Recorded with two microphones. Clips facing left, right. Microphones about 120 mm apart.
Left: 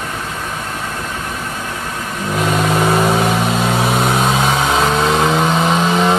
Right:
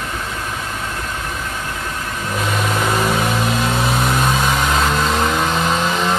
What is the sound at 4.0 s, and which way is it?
Vehicle, 20° left (ahead or behind).